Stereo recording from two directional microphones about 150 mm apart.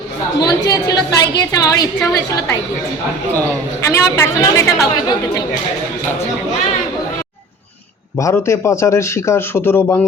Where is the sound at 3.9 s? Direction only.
20° left (ahead or behind).